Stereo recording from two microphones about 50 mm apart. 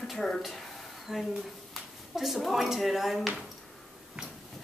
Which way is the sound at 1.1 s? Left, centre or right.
Centre.